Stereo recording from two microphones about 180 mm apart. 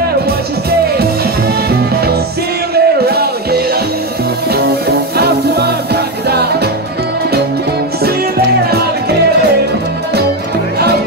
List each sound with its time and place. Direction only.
2.7 s music: 60° right (ahead or behind)